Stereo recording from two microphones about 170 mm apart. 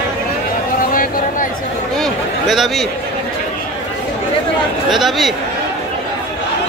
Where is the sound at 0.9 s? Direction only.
55° left (ahead or behind).